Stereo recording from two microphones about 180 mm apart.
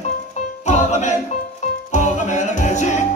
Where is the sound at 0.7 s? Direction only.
40° left (ahead or behind).